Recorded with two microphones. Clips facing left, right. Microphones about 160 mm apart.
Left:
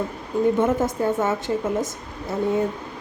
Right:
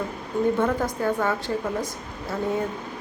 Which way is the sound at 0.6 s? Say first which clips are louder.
Left 3 dB; 25° left (ahead or behind).